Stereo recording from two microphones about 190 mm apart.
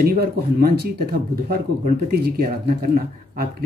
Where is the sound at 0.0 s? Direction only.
50° right (ahead or behind).